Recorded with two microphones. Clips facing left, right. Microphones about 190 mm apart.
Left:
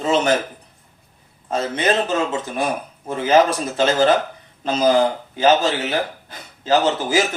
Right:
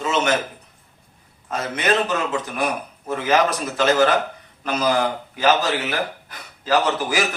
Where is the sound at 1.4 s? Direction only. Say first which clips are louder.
Left 2 dB; 30° left (ahead or behind).